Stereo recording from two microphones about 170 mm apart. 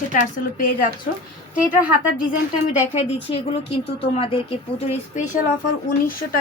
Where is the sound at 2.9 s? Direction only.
35° left (ahead or behind).